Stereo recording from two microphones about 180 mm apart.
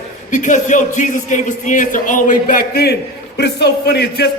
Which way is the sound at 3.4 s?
70° left (ahead or behind).